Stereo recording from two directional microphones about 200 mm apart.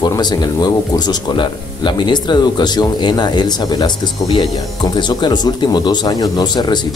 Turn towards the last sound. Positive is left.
turn(degrees=20)  # may be behind; listen again after turning